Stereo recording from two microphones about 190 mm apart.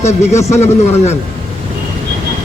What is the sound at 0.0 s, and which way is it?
A man's voice, 35° left (ahead or behind).